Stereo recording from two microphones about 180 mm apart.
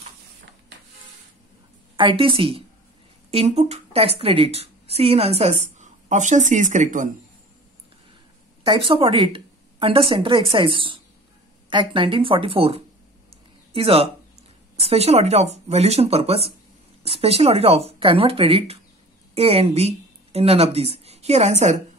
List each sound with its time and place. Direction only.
2.0 s a woman's voice: 30° right (ahead or behind); by 7.1 s 45° right (ahead or behind)
8.6 s a woman's voice: 30° right (ahead or behind)